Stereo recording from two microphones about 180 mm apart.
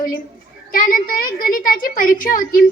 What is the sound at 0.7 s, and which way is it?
A woman's voice, 50° left (ahead or behind).